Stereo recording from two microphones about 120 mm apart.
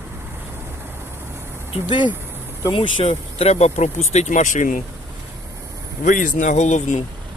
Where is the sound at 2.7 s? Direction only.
55° left (ahead or behind); by 4.8 s 90° left.